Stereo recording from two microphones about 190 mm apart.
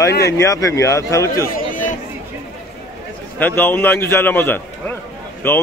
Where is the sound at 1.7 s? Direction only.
45° left (ahead or behind).